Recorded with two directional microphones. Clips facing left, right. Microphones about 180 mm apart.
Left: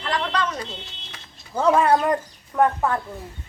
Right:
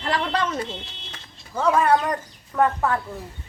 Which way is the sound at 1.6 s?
25° left (ahead or behind).